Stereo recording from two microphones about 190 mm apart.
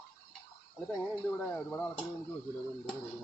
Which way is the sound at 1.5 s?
10° left (ahead or behind).